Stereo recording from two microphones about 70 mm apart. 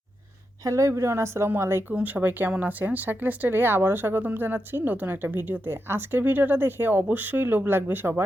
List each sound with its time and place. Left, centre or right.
0.6 s speech: right
2.0 s speech: right